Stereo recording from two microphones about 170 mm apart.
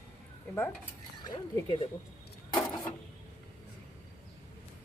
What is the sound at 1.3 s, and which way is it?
Speech, 30° left (ahead or behind).